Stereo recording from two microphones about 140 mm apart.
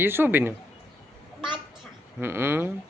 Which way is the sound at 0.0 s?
15° right (ahead or behind).